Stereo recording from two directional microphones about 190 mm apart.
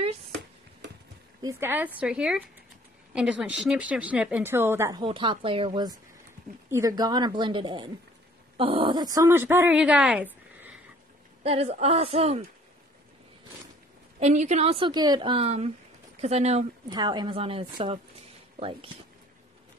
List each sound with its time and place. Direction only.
1.4 s speech: 15° right (ahead or behind)
5.0 s a woman's voice: 25° right (ahead or behind); by 10.7 s 10° right (ahead or behind)
11.4 s a woman's voice: 35° right (ahead or behind)
14.2 s a woman's voice: 35° right (ahead or behind)
17.0 s a woman's voice: 20° right (ahead or behind)